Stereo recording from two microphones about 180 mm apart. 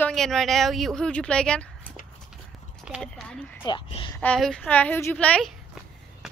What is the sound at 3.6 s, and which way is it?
Speech, 30° left (ahead or behind).